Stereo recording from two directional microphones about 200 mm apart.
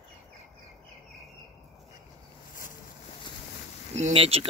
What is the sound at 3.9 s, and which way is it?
Speech, 30° right (ahead or behind).